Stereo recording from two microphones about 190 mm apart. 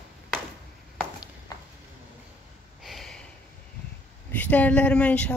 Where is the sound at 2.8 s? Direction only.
Centre (ahead or behind).